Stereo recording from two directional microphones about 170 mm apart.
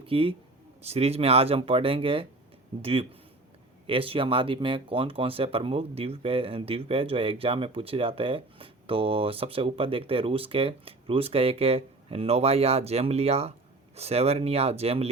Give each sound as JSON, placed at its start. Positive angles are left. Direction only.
{"t": 0.0, "sound": "speech", "side_deg": -30}